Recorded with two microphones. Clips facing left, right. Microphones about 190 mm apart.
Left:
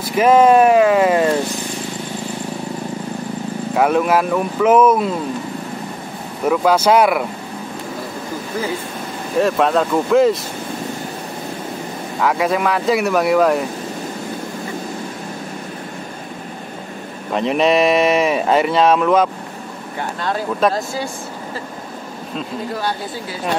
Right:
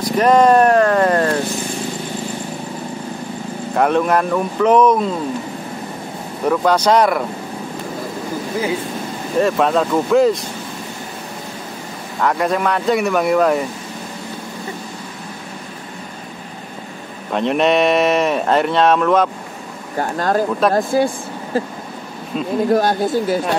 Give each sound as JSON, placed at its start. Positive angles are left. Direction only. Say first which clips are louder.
{"t": 0.1, "sound": "vehicle", "louder": "left 1 dB", "side_deg": 5}
{"t": 3.7, "sound": "speech", "louder": "even", "side_deg": 5}
{"t": 6.4, "sound": "speech", "louder": "left 1 dB", "side_deg": 5}
{"t": 9.4, "sound": "speech", "louder": "even", "side_deg": 0}
{"t": 12.2, "sound": "speech", "louder": "even", "side_deg": 0}
{"t": 17.3, "sound": "speech", "louder": "even", "side_deg": 0}
{"t": 20.0, "sound": "speech", "louder": "right 5 dB", "side_deg": -45}
{"t": 22.7, "sound": "speech", "louder": "right 11 dB", "side_deg": -45}